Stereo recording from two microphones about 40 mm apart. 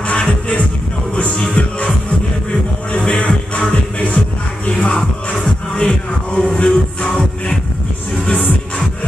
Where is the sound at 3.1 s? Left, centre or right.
Left.